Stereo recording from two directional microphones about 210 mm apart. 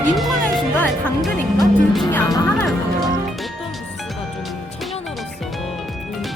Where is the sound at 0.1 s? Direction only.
Centre (ahead or behind).